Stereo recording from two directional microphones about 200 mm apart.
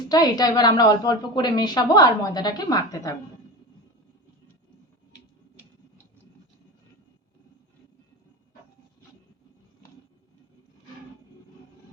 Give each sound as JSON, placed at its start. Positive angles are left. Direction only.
{"t": 0.1, "sound": "a woman's voice", "side_deg": 20}